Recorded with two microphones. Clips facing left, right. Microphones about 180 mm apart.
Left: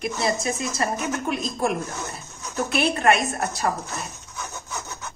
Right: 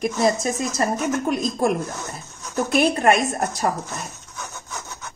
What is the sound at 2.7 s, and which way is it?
Speech, 40° right (ahead or behind).